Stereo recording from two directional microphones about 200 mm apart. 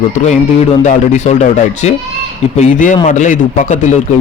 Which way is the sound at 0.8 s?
35° left (ahead or behind).